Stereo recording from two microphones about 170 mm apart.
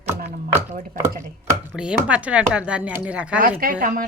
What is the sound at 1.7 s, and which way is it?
Speech, 5° right (ahead or behind).